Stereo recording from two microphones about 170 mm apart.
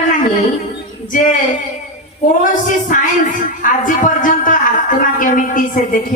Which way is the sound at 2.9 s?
50° left (ahead or behind).